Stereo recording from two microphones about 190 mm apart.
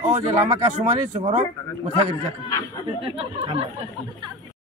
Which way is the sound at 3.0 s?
30° right (ahead or behind).